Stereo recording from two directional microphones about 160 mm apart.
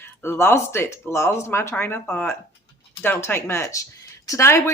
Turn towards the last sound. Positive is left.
turn(degrees=15)  # may be behind; listen again after turning